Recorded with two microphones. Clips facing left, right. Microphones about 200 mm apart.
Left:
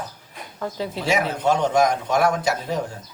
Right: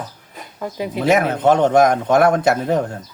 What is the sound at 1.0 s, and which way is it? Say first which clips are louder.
A man's voice: right 7 dB; 55° right (ahead or behind).